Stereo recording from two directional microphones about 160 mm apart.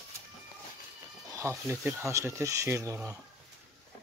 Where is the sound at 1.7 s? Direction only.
15° right (ahead or behind).